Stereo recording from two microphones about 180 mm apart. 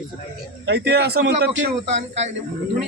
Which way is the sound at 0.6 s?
70° right (ahead or behind).